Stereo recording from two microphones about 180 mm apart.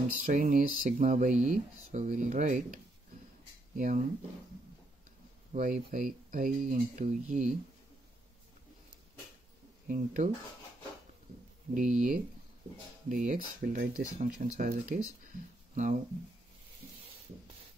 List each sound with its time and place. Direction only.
0.2 s speech: 50° right (ahead or behind)
5.5 s speech: 45° right (ahead or behind)
9.8 s speech: 50° right (ahead or behind)
11.7 s speech: 45° right (ahead or behind)
13.6 s speech: 70° right (ahead or behind)
14.2 s speech: 50° right (ahead or behind)